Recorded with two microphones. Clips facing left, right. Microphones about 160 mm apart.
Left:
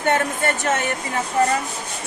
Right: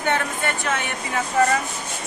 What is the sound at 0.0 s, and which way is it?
Speech, 40° left (ahead or behind).